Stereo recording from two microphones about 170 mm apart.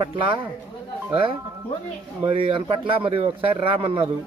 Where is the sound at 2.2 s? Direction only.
30° right (ahead or behind).